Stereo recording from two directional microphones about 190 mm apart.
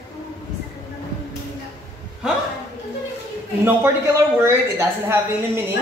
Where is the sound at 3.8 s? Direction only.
10° right (ahead or behind).